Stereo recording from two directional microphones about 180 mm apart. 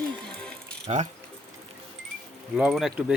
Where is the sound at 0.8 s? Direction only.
45° right (ahead or behind).